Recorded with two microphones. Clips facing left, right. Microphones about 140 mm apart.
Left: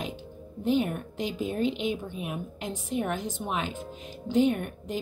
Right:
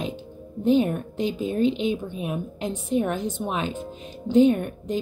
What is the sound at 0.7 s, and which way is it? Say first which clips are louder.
A woman's voice: right 6 dB; 25° right (ahead or behind).